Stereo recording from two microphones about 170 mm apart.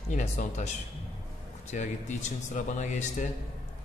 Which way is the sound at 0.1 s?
40° left (ahead or behind).